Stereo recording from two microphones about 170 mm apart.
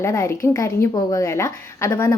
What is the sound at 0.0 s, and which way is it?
A woman's voice, 15° left (ahead or behind).